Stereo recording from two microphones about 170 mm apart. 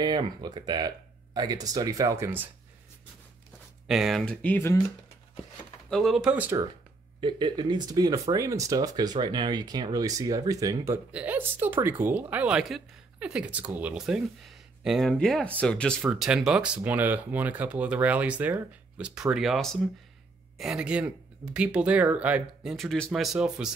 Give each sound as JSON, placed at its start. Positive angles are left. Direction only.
{"t": 0.0, "sound": "speech", "side_deg": -25}
{"t": 3.8, "sound": "speech", "side_deg": 0}
{"t": 5.9, "sound": "speech", "side_deg": 0}
{"t": 7.2, "sound": "speech", "side_deg": -30}
{"t": 11.1, "sound": "speech", "side_deg": -10}